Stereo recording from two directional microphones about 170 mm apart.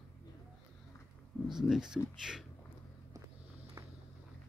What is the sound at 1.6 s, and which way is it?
Speech, 5° right (ahead or behind).